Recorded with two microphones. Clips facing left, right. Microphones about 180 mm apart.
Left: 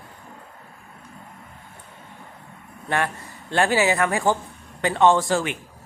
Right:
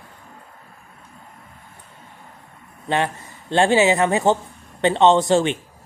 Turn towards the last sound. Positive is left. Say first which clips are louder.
# right 4 dB
turn(degrees=-25)  # may be behind; listen again after turning